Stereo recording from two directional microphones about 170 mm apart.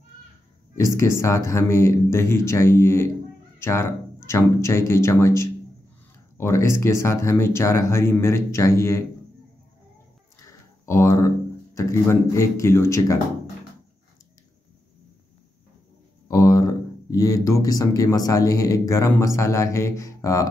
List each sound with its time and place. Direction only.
0.7 s speech: 15° left (ahead or behind)
10.4 s speech: 20° left (ahead or behind)
16.3 s speech: 20° left (ahead or behind)